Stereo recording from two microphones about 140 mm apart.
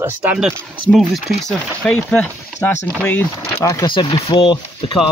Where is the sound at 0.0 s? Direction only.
10° right (ahead or behind).